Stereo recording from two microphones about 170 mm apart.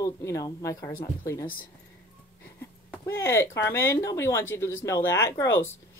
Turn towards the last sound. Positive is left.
turn(degrees=15)  # may be behind; listen again after turning